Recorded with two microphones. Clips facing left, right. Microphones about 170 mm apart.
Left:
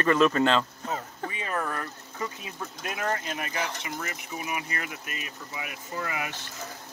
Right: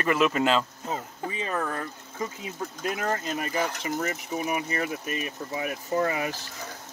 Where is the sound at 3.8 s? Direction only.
40° right (ahead or behind).